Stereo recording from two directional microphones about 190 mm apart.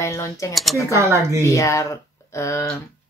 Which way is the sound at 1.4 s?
15° left (ahead or behind).